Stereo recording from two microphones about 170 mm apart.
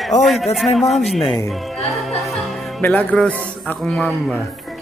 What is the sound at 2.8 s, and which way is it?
A man's voice, 10° left (ahead or behind).